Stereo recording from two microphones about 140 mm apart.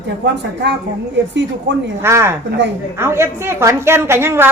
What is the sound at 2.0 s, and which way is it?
A woman's voice, 20° right (ahead or behind).